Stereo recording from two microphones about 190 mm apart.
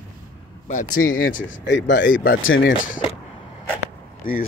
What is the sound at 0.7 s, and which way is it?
Speech, 45° left (ahead or behind).